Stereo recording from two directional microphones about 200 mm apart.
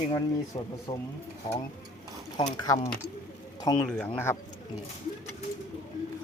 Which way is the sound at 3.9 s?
5° left (ahead or behind).